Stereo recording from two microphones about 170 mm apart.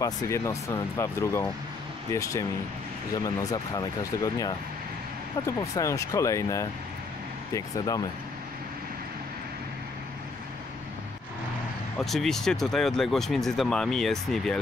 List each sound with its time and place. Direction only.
0.0 s speech: 20° left (ahead or behind)
3.3 s speech: 20° left (ahead or behind)
5.8 s speech: 20° left (ahead or behind)
12.0 s speech: centre (ahead or behind)